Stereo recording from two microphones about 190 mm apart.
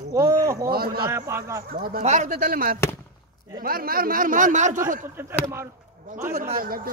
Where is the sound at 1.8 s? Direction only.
50° right (ahead or behind).